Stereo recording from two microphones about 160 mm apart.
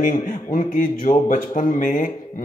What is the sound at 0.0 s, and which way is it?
Speech, 55° left (ahead or behind).